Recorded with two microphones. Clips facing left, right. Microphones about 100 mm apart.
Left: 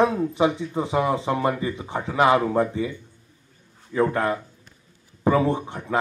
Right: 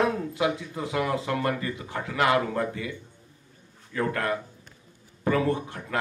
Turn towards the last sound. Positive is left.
turn(degrees=20)  # may be behind; listen again after turning